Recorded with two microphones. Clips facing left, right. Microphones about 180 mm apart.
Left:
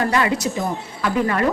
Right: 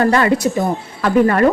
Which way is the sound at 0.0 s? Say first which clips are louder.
Right 6 dB; 50° right (ahead or behind).